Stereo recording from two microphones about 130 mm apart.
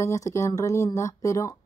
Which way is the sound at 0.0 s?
25° left (ahead or behind).